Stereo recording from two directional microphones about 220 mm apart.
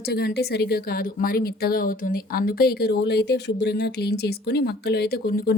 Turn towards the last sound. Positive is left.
turn(degrees=45)  # may be behind; listen again after turning